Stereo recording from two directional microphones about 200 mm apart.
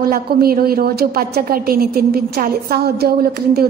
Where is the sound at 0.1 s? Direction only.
50° right (ahead or behind).